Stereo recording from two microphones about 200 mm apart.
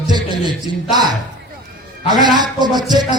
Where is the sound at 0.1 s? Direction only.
20° right (ahead or behind).